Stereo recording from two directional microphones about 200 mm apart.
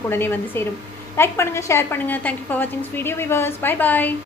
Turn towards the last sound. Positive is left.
turn(degrees=10)  # may be behind; listen again after turning